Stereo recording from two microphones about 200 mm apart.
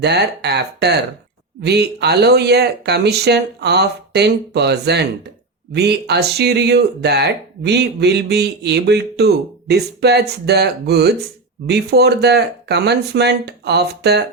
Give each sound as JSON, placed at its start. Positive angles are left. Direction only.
{"t": 0.0, "sound": "speech", "side_deg": -55}